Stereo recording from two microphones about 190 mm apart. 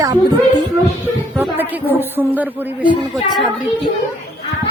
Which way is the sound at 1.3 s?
10° right (ahead or behind).